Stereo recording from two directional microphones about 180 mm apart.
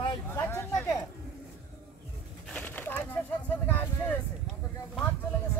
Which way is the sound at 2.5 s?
10° left (ahead or behind).